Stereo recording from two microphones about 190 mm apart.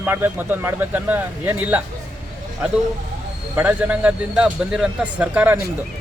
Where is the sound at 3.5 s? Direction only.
10° right (ahead or behind).